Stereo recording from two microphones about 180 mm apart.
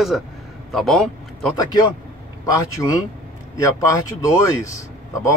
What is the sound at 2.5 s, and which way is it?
A man's voice, 20° left (ahead or behind).